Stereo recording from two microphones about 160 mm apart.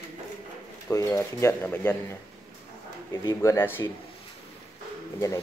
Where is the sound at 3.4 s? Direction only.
15° left (ahead or behind).